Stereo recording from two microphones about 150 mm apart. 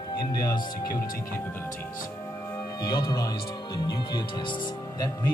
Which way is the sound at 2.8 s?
25° left (ahead or behind).